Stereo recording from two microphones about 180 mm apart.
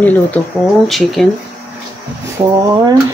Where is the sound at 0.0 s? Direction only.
10° left (ahead or behind).